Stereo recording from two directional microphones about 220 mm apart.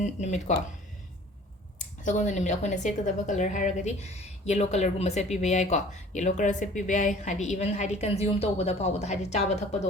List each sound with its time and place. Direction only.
0.0 s speech: 30° left (ahead or behind)
1.8 s speech: 35° left (ahead or behind)